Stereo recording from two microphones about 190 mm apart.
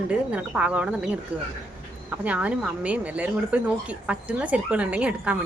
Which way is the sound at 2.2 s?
5° right (ahead or behind).